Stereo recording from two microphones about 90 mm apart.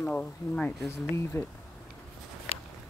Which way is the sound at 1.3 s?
35° left (ahead or behind).